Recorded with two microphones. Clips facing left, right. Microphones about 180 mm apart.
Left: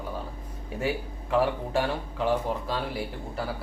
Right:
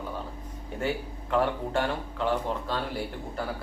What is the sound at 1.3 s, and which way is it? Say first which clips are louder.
Speech: left 1 dB; 10° left (ahead or behind).